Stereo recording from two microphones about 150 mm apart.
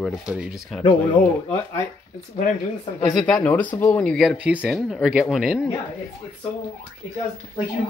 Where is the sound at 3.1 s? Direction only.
5° left (ahead or behind).